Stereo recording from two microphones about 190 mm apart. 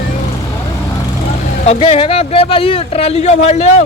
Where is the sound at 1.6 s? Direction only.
35° left (ahead or behind).